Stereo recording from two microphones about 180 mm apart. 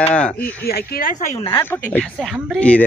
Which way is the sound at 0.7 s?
50° left (ahead or behind).